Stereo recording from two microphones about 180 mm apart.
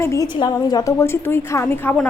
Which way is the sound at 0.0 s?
15° left (ahead or behind).